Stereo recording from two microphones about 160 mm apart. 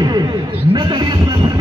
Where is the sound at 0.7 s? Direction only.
25° right (ahead or behind).